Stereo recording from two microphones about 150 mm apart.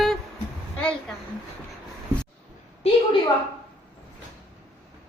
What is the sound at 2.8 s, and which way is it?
Speech, 40° left (ahead or behind).